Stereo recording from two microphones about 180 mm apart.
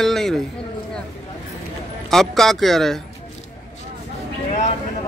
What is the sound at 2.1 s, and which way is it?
Speech, centre (ahead or behind).